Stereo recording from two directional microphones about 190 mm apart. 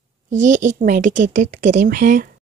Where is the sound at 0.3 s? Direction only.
40° right (ahead or behind).